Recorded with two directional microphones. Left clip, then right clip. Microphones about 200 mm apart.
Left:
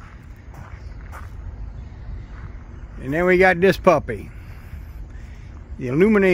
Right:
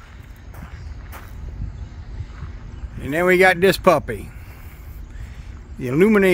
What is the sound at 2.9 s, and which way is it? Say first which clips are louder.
Speech: right 1 dB; 10° right (ahead or behind).